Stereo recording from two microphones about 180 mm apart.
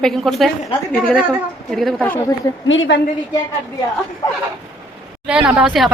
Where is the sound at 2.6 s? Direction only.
90° left.